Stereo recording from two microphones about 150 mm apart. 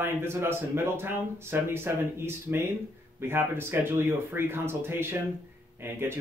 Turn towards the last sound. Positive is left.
turn(degrees=-15)  # may be behind; listen again after turning